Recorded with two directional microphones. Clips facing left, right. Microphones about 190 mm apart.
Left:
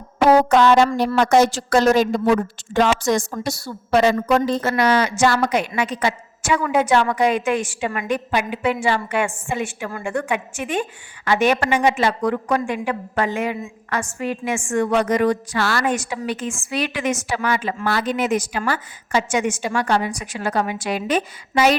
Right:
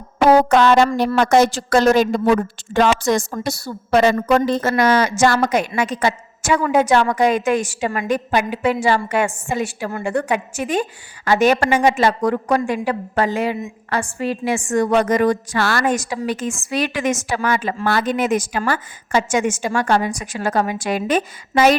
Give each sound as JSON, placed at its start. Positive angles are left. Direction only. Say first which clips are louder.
{"t": 0.4, "sound": "a woman's voice", "louder": "right 1 dB", "side_deg": -60}
{"t": 4.6, "sound": "a woman's voice", "louder": "right 2 dB", "side_deg": -45}